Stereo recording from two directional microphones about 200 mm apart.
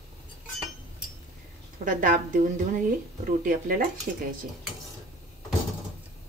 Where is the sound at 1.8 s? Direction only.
40° right (ahead or behind).